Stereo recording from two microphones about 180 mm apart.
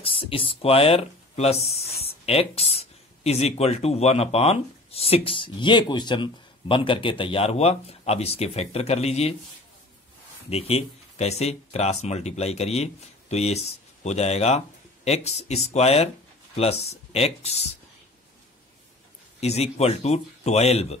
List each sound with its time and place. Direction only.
0.0 s speech: 30° left (ahead or behind)
10.5 s speech: 35° left (ahead or behind)
19.4 s speech: 35° left (ahead or behind)